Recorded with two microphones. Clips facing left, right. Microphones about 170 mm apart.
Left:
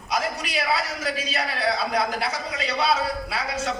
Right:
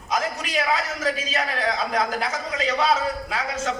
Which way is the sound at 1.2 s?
35° left (ahead or behind).